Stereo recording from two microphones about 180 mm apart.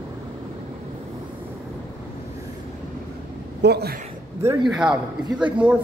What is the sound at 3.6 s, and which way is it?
Speech, 60° right (ahead or behind).